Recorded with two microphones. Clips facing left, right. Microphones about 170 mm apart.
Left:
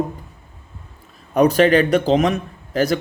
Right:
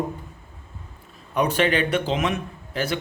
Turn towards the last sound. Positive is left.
turn(degrees=40)  # may be behind; listen again after turning